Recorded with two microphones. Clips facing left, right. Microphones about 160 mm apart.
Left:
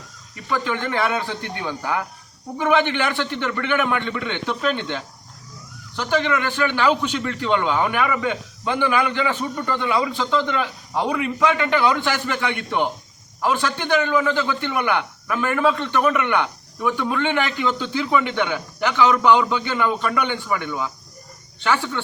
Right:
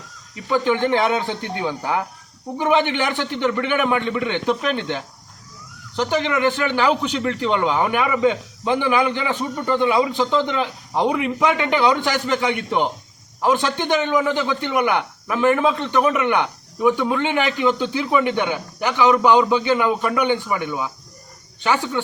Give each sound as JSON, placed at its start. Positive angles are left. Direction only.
{"t": 0.4, "sound": "a man's voice", "side_deg": -20}
{"t": 6.0, "sound": "a man's voice", "side_deg": -20}